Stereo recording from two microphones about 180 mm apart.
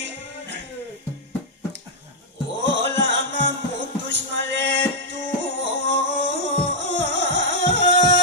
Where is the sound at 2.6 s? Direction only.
85° right.